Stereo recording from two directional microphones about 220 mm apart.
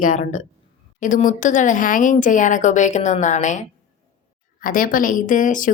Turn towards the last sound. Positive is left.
turn(degrees=35)  # may be behind; listen again after turning